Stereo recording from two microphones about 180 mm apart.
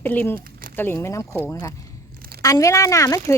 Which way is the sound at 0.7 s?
10° left (ahead or behind).